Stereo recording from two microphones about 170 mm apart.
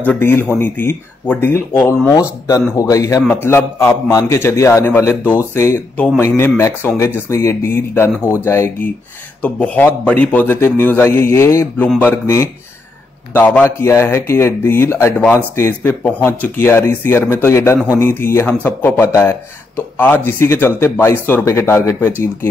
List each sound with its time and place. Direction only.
0.0 s a man's voice: 10° left (ahead or behind)